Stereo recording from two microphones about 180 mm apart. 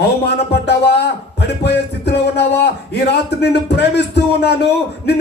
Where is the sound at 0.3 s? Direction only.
65° left (ahead or behind).